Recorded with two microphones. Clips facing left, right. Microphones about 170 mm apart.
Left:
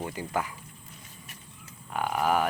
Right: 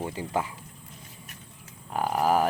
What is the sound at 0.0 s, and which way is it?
Speech, 30° right (ahead or behind).